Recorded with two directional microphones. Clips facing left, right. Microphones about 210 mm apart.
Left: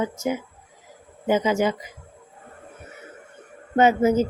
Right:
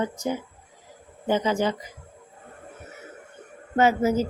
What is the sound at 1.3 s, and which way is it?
Speech, 10° left (ahead or behind).